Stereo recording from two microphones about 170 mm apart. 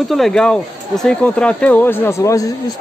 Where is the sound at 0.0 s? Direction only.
Centre (ahead or behind).